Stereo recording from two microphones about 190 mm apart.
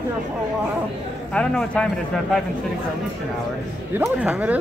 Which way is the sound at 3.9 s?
10° right (ahead or behind).